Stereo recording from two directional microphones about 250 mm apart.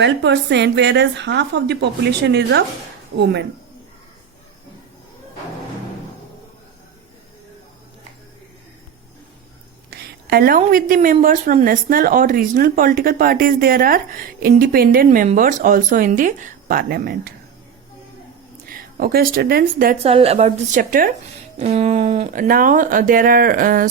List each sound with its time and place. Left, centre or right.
0.0 s a woman's voice: right
9.9 s a woman's voice: right
18.7 s speech: right
20.0 s a woman's voice: right